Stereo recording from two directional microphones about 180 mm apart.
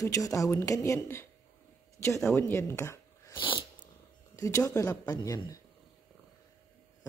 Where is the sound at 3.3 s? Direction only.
25° left (ahead or behind).